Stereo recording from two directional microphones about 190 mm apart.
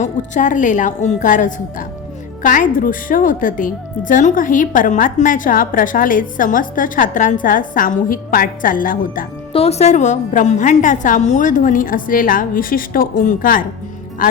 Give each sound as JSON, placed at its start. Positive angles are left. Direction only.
{"t": 0.0, "sound": "a woman's voice", "side_deg": 40}
{"t": 9.5, "sound": "a woman's voice", "side_deg": 30}